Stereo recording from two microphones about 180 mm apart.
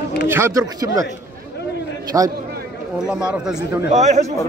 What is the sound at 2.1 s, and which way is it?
Speech, 15° right (ahead or behind).